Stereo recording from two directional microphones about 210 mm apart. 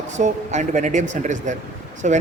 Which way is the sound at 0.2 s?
35° right (ahead or behind).